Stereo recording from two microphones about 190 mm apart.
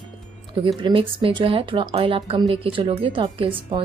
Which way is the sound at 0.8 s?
25° right (ahead or behind).